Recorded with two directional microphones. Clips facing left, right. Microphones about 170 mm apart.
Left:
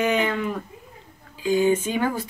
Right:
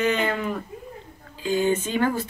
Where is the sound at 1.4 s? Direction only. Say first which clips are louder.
Left 3 dB; 10° left (ahead or behind).